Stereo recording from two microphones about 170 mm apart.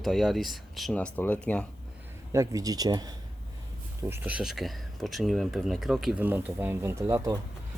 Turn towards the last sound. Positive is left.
turn(degrees=-20)  # may be behind; listen again after turning